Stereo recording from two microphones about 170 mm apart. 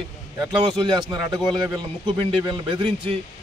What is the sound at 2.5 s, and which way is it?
Speech, 30° right (ahead or behind).